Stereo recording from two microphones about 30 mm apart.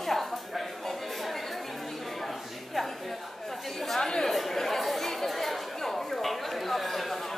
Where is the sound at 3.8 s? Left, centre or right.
Centre.